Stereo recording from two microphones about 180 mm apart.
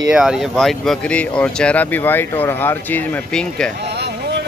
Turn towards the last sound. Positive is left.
turn(degrees=5)  # may be behind; listen again after turning